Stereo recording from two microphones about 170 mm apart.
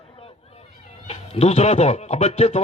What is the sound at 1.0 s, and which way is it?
Speech, 35° left (ahead or behind).